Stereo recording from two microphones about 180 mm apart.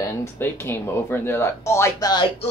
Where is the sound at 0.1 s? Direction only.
15° left (ahead or behind).